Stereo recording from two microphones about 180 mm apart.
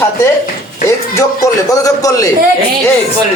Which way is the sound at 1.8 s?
20° left (ahead or behind).